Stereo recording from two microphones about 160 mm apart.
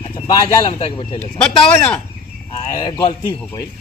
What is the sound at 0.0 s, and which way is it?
Speech, 25° left (ahead or behind).